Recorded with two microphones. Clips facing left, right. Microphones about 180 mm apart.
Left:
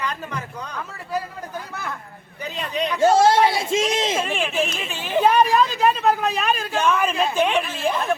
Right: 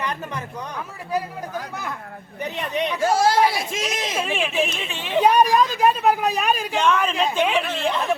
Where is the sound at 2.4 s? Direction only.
20° right (ahead or behind).